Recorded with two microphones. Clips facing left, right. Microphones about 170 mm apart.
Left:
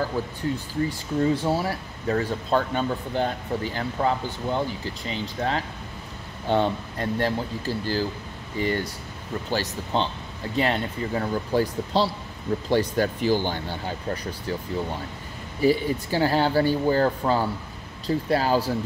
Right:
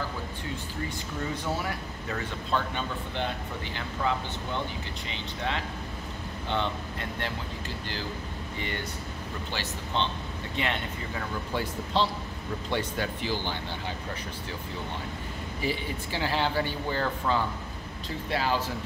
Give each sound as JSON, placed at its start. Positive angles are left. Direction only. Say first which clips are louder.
{"t": 0.8, "sound": "speech", "louder": "left 12 dB", "side_deg": 30}
{"t": 15.6, "sound": "speech", "louder": "left 11 dB", "side_deg": 40}